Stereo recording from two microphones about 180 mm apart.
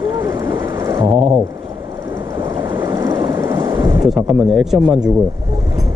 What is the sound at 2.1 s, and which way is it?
Vehicle, 20° right (ahead or behind).